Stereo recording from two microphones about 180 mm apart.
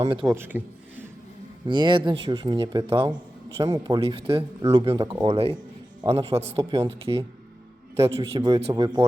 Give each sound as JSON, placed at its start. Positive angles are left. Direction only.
{"t": 0.0, "sound": "a man's voice", "side_deg": -30}
{"t": 0.3, "sound": "a man's voice", "side_deg": -10}
{"t": 1.6, "sound": "a man's voice", "side_deg": -25}
{"t": 8.2, "sound": "speech", "side_deg": -25}